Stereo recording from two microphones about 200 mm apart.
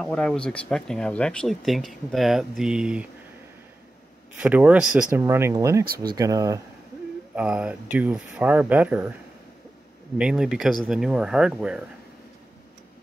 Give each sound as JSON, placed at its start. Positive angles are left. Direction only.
{"t": 0.0, "sound": "speech", "side_deg": 5}
{"t": 4.4, "sound": "speech", "side_deg": -5}
{"t": 5.2, "sound": "speech", "side_deg": -15}
{"t": 7.3, "sound": "speech", "side_deg": -5}
{"t": 10.1, "sound": "speech", "side_deg": -5}